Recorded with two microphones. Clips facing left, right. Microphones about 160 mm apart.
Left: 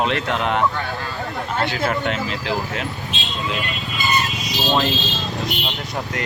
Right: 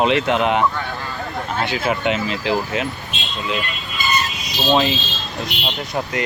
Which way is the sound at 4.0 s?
20° left (ahead or behind).